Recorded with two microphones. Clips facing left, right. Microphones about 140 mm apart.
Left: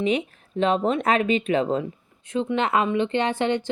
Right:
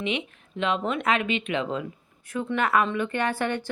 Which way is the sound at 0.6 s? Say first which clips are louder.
Left 5 dB; 35° left (ahead or behind).